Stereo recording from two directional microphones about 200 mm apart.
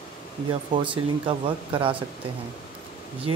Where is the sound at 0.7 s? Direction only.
25° right (ahead or behind).